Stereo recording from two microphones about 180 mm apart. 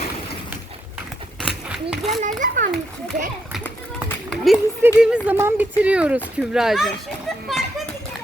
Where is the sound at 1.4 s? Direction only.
5° right (ahead or behind).